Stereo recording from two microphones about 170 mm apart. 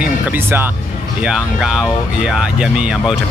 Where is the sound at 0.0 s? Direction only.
10° right (ahead or behind).